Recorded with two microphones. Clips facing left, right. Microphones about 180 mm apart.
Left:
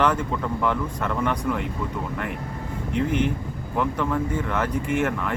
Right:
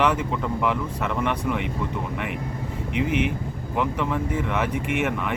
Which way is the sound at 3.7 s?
Centre (ahead or behind).